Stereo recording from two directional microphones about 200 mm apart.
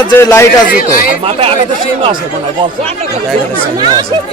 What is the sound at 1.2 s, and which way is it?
Speech, 30° right (ahead or behind).